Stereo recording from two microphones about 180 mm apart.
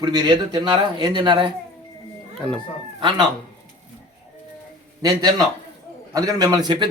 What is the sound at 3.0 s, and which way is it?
Speech, 25° right (ahead or behind).